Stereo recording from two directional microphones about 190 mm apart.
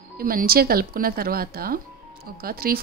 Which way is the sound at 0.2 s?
50° right (ahead or behind).